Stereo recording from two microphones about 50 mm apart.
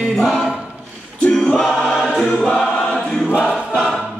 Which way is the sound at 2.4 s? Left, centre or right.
Centre.